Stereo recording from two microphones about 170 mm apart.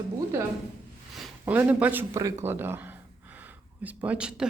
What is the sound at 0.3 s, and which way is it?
Speech, 15° right (ahead or behind).